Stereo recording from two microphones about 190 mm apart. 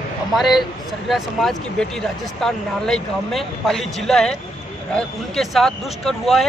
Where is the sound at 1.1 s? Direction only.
Centre (ahead or behind).